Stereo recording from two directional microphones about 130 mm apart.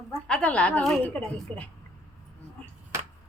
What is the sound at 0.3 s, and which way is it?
Speech, 10° left (ahead or behind).